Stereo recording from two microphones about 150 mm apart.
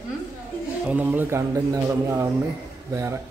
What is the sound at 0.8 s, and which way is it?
A man's voice, 10° right (ahead or behind).